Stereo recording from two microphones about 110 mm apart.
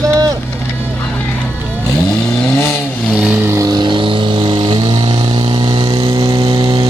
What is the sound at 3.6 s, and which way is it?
Vehicle, 45° right (ahead or behind).